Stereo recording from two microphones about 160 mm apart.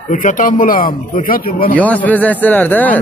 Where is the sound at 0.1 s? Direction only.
55° left (ahead or behind).